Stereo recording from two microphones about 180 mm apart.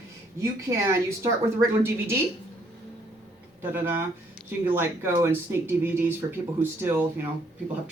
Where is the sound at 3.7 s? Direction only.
15° right (ahead or behind).